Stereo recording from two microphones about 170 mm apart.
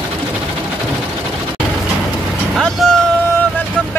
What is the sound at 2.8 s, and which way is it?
Music, centre (ahead or behind).